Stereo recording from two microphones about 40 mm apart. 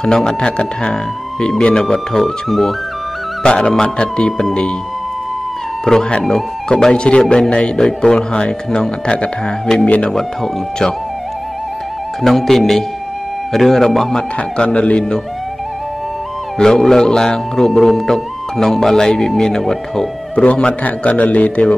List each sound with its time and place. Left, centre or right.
0.0 s speech: centre
3.4 s speech: left
5.9 s speech: left
10.1 s speech: centre
12.2 s a man's voice: centre
14.6 s speech: left
16.5 s a man's voice: centre
20.3 s a man's voice: left